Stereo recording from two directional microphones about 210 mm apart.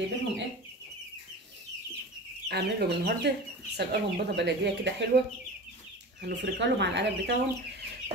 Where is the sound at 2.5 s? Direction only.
50° right (ahead or behind).